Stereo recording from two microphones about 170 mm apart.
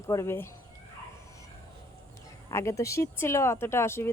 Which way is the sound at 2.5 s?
15° left (ahead or behind).